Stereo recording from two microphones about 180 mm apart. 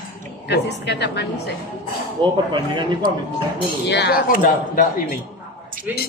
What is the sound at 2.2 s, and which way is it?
Speech, 25° right (ahead or behind).